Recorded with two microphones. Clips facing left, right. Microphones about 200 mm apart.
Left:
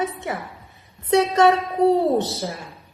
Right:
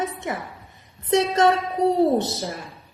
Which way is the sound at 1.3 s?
15° left (ahead or behind).